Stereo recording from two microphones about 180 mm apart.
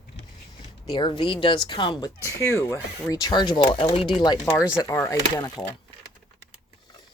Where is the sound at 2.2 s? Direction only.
15° left (ahead or behind).